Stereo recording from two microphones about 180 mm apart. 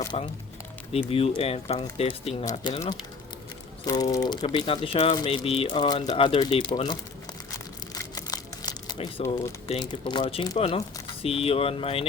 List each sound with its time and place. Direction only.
0.1 s speech: 35° left (ahead or behind)
2.4 s speech: 20° left (ahead or behind)
3.8 s speech: 20° left (ahead or behind)
7.9 s a sound: 20° left (ahead or behind)
9.0 s speech: 30° left (ahead or behind)